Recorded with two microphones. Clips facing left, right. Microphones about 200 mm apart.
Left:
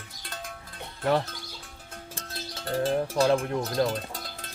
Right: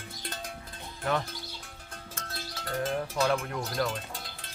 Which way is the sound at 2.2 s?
30° left (ahead or behind).